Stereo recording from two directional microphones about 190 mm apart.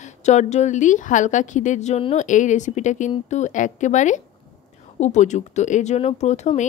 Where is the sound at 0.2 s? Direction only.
40° left (ahead or behind).